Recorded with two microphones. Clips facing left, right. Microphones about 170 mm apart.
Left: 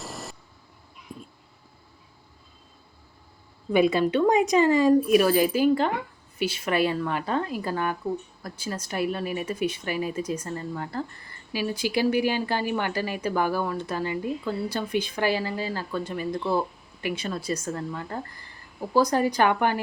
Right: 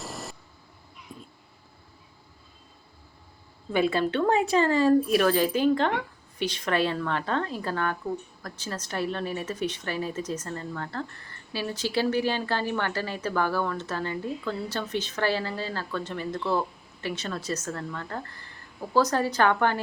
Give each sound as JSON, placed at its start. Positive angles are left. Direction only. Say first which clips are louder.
{"t": 0.0, "sound": "vehicle", "louder": "even", "side_deg": 0}
{"t": 3.7, "sound": "speech", "louder": "left 4 dB", "side_deg": 15}